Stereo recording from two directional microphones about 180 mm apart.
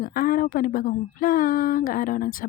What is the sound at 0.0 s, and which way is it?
Speech, 55° left (ahead or behind).